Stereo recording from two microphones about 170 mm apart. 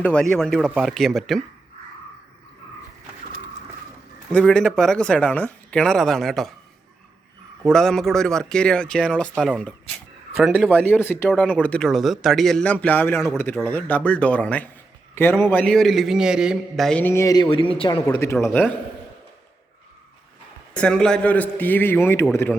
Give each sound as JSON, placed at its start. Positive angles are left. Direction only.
{"t": 0.0, "sound": "speech", "side_deg": 5}
{"t": 4.3, "sound": "speech", "side_deg": 5}
{"t": 7.6, "sound": "speech", "side_deg": 5}
{"t": 10.7, "sound": "a man's voice", "side_deg": 10}
{"t": 18.2, "sound": "a man's voice", "side_deg": 15}
{"t": 20.7, "sound": "a man's voice", "side_deg": 5}